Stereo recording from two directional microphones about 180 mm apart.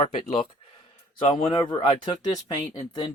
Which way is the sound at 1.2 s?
30° left (ahead or behind).